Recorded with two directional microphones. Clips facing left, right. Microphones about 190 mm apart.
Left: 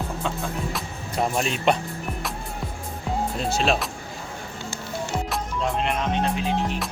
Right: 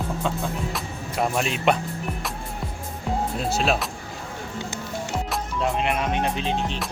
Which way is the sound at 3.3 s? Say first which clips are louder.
Left 1 dB; centre (ahead or behind).